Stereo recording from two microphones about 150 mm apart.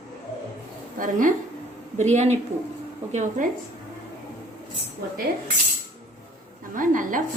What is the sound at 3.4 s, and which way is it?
Speech, 60° right (ahead or behind).